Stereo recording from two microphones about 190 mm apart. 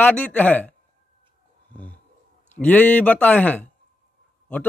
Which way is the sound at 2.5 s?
10° left (ahead or behind).